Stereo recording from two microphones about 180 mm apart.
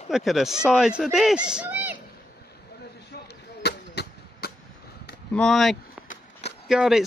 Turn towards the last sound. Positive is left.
turn(degrees=0)  # may be behind; listen again after turning